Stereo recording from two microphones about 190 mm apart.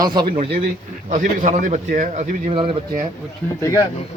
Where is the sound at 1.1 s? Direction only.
40° right (ahead or behind).